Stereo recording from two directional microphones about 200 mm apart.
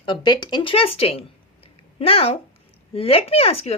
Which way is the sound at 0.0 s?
25° left (ahead or behind).